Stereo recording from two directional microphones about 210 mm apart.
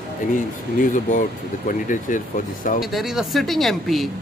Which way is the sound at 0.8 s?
35° left (ahead or behind).